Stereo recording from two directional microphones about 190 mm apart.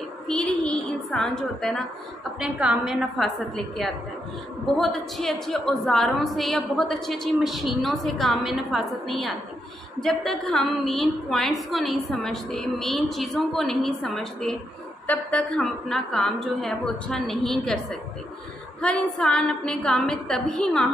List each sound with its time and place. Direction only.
0.3 s a sound: 5° left (ahead or behind)
2.4 s a woman's voice: 5° right (ahead or behind)
18.8 s a woman's voice: 5° left (ahead or behind)